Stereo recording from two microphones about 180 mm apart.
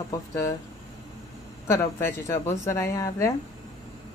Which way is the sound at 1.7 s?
15° left (ahead or behind).